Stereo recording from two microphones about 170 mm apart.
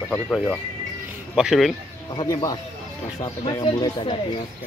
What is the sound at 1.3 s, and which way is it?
Speech, centre (ahead or behind).